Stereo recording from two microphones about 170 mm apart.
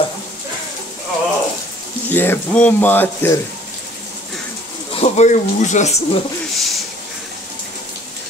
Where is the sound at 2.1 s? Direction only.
10° left (ahead or behind).